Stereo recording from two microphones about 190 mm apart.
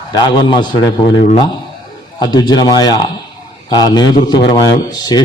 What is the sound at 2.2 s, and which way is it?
Speech, 25° left (ahead or behind).